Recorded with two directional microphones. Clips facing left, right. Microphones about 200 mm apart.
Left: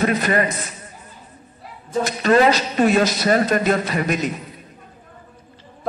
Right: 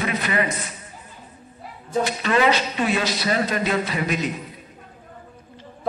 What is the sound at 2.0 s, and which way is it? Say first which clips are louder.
Speech: left 5 dB; 45° left (ahead or behind).